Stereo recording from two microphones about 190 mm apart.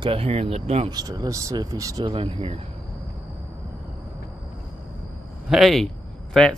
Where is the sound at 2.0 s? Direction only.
30° right (ahead or behind).